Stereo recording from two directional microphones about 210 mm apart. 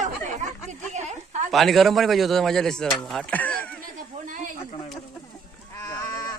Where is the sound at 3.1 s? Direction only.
5° left (ahead or behind).